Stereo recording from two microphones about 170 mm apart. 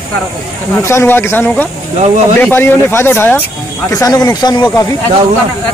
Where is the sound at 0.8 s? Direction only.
15° left (ahead or behind).